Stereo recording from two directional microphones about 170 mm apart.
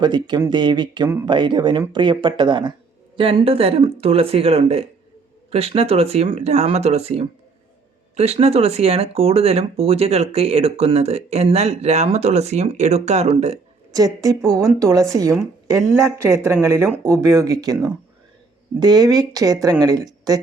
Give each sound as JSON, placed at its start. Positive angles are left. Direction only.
{"t": 0.0, "sound": "speech", "side_deg": -25}
{"t": 13.9, "sound": "a woman's voice", "side_deg": -20}